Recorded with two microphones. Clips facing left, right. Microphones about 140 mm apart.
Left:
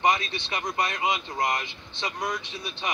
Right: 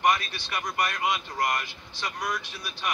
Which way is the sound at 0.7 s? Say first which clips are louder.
Even; 25° left (ahead or behind).